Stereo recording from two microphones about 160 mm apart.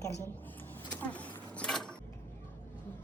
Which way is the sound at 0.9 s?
10° left (ahead or behind).